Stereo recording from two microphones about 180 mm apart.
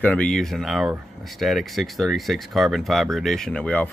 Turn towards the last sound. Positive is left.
turn(degrees=5)  # may be behind; listen again after turning